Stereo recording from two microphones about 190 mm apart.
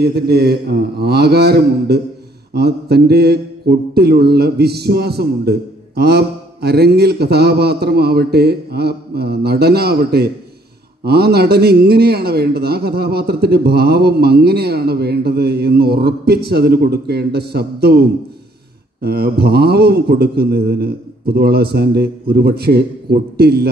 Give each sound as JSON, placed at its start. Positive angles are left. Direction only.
{"t": 0.0, "sound": "mantra", "side_deg": -55}